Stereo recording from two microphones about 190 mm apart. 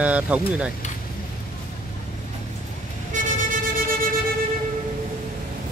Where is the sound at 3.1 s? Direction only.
40° right (ahead or behind).